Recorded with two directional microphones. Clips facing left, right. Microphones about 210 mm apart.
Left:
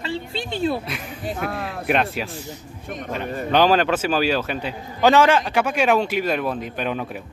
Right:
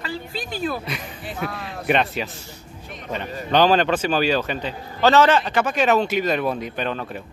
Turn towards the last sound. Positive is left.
turn(degrees=5)  # may be behind; listen again after turning